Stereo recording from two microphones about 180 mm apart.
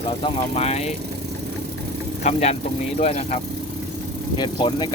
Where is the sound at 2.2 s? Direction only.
40° left (ahead or behind).